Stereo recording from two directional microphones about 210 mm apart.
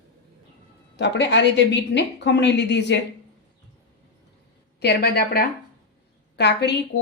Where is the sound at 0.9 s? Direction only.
55° left (ahead or behind).